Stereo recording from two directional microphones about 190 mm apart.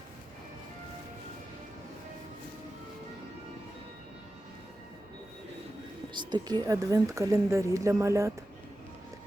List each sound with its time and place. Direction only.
6.1 s a woman's voice: 20° right (ahead or behind)